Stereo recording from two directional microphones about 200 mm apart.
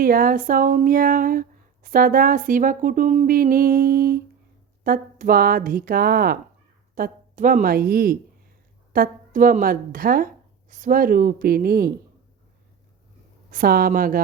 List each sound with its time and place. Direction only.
0.0 s speech: 45° right (ahead or behind)
13.5 s speech: 45° right (ahead or behind)